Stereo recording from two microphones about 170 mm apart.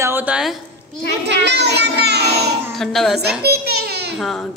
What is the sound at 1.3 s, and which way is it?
Child singing, 85° right.